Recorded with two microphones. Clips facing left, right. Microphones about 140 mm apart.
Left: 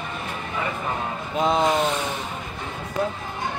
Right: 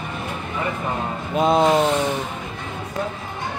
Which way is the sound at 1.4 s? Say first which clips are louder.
Right 4 dB; 30° right (ahead or behind).